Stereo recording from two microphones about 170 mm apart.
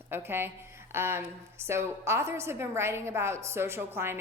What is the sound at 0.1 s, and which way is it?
A woman's voice, 15° right (ahead or behind).